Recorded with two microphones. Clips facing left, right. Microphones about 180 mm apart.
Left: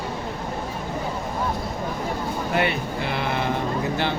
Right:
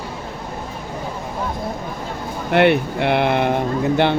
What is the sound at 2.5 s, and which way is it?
Speech, 65° right (ahead or behind).